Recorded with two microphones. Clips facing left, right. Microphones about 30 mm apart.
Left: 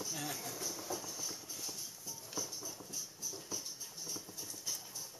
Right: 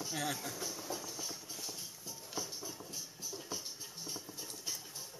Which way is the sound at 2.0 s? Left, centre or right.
Right.